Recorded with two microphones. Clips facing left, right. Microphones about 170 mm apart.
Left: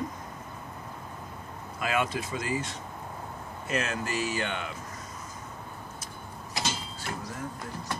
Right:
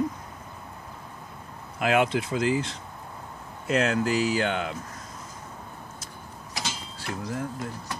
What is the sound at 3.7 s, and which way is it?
Speech, 75° right (ahead or behind).